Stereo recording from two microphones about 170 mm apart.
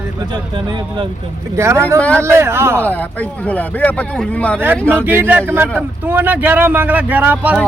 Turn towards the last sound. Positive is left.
turn(degrees=-10)  # may be behind; listen again after turning